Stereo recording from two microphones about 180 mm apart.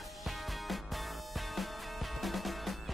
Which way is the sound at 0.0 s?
Centre (ahead or behind).